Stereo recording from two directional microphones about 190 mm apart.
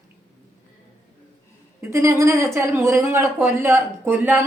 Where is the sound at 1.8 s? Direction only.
15° right (ahead or behind).